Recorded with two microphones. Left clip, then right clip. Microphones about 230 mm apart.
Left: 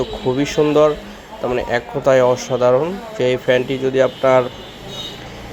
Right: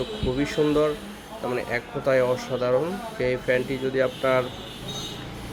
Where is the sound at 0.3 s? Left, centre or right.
Centre.